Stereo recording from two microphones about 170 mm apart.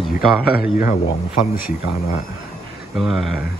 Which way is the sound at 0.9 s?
50° left (ahead or behind).